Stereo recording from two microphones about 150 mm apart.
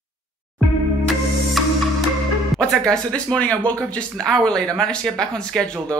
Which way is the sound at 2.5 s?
5° left (ahead or behind).